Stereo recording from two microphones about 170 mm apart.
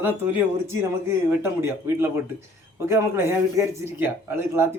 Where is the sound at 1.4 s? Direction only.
15° right (ahead or behind).